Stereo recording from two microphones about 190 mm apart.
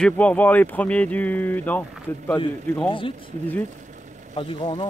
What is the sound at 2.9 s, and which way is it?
Speech, 25° left (ahead or behind).